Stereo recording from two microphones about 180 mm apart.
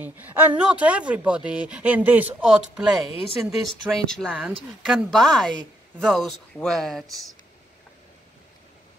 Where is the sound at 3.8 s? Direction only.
5° left (ahead or behind).